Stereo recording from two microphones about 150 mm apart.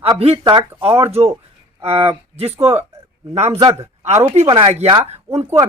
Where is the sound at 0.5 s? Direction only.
40° right (ahead or behind).